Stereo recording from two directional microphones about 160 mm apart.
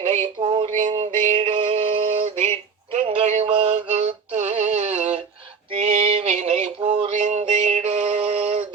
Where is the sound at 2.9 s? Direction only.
45° right (ahead or behind).